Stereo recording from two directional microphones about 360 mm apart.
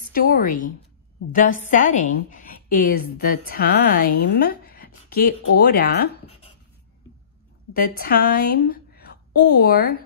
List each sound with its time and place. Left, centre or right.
0.1 s a woman's voice: left
7.7 s a woman's voice: left